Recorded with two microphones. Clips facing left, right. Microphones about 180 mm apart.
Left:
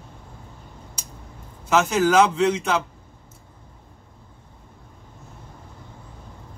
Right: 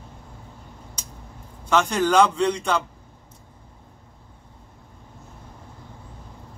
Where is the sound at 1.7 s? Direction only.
5° left (ahead or behind).